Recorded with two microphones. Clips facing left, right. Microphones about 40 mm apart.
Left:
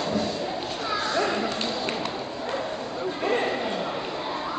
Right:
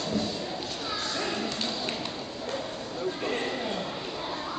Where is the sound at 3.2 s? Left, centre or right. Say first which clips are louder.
Left 8 dB; left.